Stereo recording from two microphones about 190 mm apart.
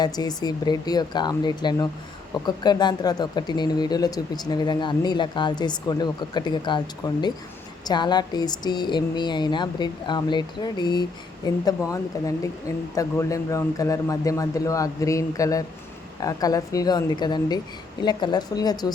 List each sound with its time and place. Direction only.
0.0 s speech: 20° left (ahead or behind)